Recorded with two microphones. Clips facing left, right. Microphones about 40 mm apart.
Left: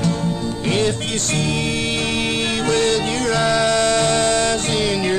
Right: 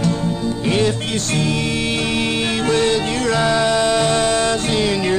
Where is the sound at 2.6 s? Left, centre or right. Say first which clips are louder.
Right 1 dB; centre.